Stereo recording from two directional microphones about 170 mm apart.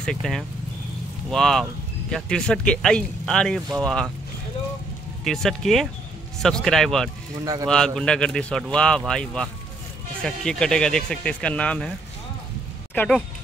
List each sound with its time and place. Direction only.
0.0 s speech: 5° left (ahead or behind)
5.2 s speech: centre (ahead or behind)
12.9 s speech: 10° left (ahead or behind)